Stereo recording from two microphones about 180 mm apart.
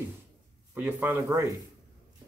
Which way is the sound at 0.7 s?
10° right (ahead or behind).